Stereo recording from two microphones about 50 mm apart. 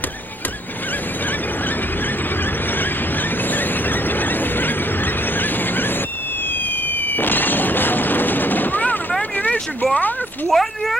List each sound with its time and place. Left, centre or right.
2.7 s squeal: left
6.9 s fireworks: left
9.4 s vehicle: left
10.5 s a sound: centre